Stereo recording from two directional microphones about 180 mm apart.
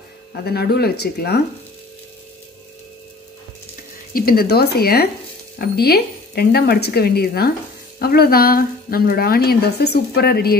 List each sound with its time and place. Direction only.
0.3 s a woman's voice: 60° left (ahead or behind)
4.1 s a woman's voice: 55° left (ahead or behind)